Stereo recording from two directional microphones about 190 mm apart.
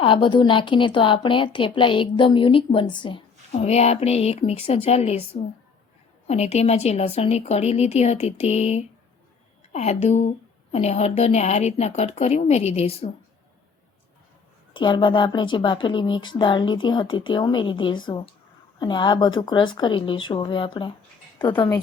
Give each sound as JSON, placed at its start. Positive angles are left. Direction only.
{"t": 0.0, "sound": "a woman's voice", "side_deg": 25}
{"t": 14.7, "sound": "a woman's voice", "side_deg": 25}